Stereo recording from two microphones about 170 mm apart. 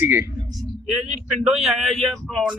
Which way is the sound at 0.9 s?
Centre (ahead or behind).